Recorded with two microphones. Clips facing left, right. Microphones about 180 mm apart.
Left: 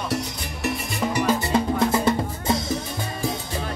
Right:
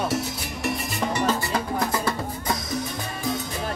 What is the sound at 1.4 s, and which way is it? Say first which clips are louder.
Music: left 5 dB; 25° left (ahead or behind).